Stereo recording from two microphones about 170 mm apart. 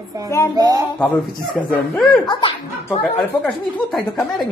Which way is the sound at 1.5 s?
5° left (ahead or behind).